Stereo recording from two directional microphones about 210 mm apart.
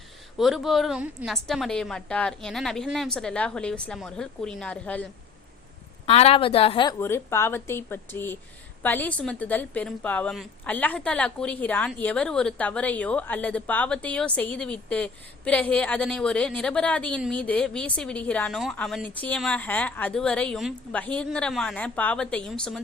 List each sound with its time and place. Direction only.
0.3 s a woman's voice: centre (ahead or behind)
6.1 s a woman's voice: 30° left (ahead or behind)
7.0 s a woman's voice: 10° left (ahead or behind)